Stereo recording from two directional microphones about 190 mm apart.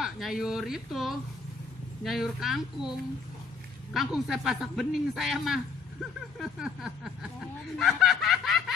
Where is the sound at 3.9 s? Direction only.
Centre (ahead or behind).